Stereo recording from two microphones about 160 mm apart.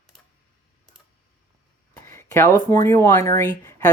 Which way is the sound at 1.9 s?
15° left (ahead or behind).